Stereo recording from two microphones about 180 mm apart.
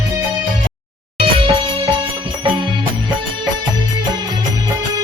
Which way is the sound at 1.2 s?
30° right (ahead or behind).